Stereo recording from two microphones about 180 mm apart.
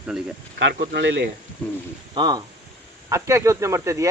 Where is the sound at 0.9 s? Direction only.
75° right (ahead or behind).